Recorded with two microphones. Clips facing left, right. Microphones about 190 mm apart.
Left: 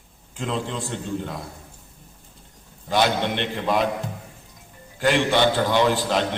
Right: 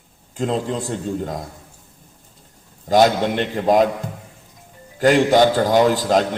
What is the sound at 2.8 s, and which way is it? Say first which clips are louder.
A man's voice: right 6 dB; 40° right (ahead or behind).